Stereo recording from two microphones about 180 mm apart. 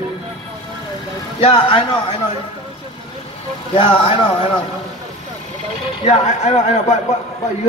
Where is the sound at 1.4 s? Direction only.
25° left (ahead or behind).